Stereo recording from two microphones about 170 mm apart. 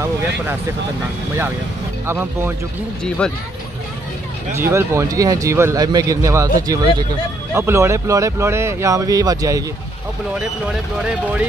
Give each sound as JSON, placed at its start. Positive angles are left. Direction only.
{"t": 2.0, "sound": "speech", "side_deg": -15}
{"t": 3.0, "sound": "speech", "side_deg": 5}
{"t": 4.6, "sound": "speech", "side_deg": -15}